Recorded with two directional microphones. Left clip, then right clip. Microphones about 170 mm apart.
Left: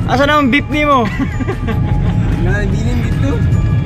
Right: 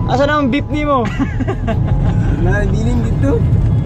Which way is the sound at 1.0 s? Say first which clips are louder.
Even; 35° left (ahead or behind).